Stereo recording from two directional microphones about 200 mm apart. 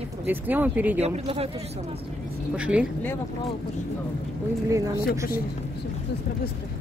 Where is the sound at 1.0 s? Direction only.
30° right (ahead or behind).